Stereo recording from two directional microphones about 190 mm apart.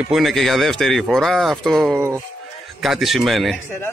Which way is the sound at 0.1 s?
Centre (ahead or behind).